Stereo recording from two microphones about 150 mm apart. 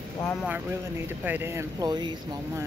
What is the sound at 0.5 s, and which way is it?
Speech, 15° right (ahead or behind).